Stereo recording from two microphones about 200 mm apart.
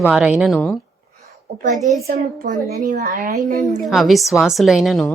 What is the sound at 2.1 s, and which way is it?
A woman's voice, 40° right (ahead or behind).